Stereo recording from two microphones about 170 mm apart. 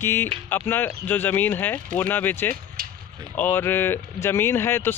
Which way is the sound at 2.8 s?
60° right (ahead or behind).